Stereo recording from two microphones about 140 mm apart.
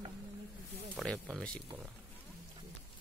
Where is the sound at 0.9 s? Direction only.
Centre (ahead or behind).